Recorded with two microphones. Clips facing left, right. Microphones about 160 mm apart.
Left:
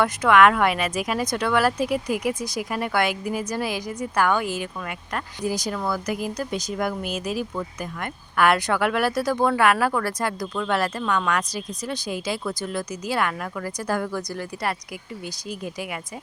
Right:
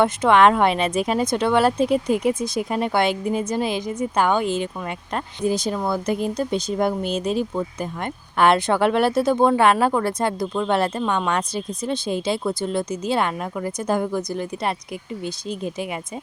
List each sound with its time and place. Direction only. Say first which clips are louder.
0.0 s speech: right 2 dB; 25° right (ahead or behind)